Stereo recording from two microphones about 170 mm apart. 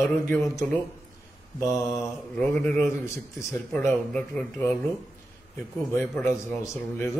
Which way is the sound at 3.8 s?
10° left (ahead or behind).